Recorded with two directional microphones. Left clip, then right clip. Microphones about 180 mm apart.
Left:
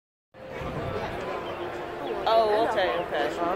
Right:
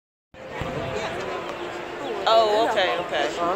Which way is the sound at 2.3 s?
20° left (ahead or behind).